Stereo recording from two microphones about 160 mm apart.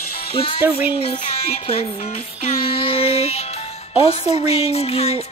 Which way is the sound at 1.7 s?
40° left (ahead or behind).